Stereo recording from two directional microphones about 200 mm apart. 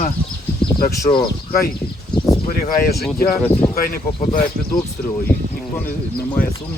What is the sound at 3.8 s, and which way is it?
Speech, 45° left (ahead or behind).